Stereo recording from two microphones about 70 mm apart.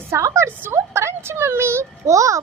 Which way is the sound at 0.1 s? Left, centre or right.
Right.